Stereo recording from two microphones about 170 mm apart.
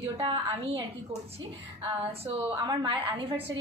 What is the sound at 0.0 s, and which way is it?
Speech, 30° right (ahead or behind).